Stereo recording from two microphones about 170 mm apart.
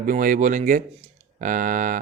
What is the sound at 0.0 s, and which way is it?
A man's voice, 55° right (ahead or behind).